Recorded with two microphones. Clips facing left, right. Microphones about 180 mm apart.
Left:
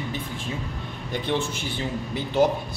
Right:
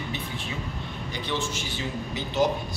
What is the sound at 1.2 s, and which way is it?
A man's voice, 55° left (ahead or behind).